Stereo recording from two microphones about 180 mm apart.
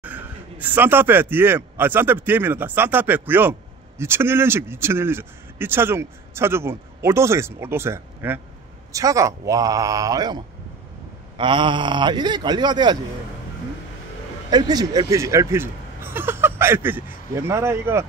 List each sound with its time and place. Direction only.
0.0 s speech: 10° right (ahead or behind); by 13.0 s 25° right (ahead or behind)
14.5 s speech: 20° right (ahead or behind)